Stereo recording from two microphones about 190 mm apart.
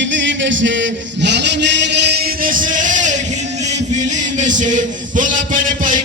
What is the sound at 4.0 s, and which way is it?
Music, 40° right (ahead or behind).